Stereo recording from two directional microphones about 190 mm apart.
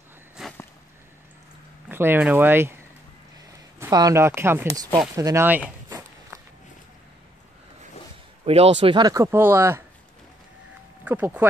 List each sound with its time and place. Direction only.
0.4 s a sound: centre (ahead or behind)
1.9 s speech: 10° right (ahead or behind)
3.8 s speech: 15° right (ahead or behind)
5.1 s walk: 15° right (ahead or behind)
8.5 s speech: 30° right (ahead or behind); by 9.8 s 15° right (ahead or behind)
11.1 s speech: 10° right (ahead or behind)